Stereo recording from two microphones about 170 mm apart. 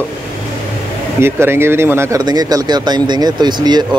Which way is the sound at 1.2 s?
15° right (ahead or behind).